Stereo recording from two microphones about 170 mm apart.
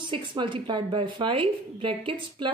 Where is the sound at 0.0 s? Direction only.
30° right (ahead or behind).